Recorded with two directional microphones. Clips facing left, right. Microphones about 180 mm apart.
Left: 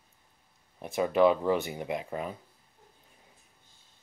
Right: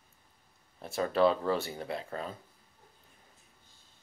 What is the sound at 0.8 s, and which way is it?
Speech, 15° left (ahead or behind).